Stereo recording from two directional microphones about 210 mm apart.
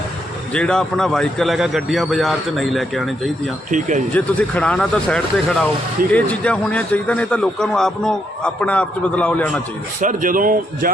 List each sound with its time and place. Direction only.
0.5 s a man's voice: 5° left (ahead or behind)
3.7 s speech: 35° right (ahead or behind)
4.1 s a man's voice: 5° left (ahead or behind)
10.0 s speech: 40° right (ahead or behind)